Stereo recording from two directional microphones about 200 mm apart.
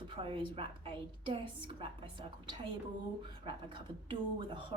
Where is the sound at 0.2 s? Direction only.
25° right (ahead or behind).